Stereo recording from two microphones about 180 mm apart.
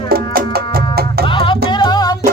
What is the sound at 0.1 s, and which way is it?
Music, 60° right (ahead or behind).